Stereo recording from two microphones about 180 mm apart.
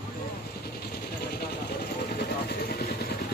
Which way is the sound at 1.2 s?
60° left (ahead or behind).